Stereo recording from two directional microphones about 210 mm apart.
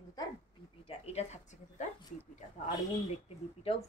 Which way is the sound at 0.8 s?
30° left (ahead or behind).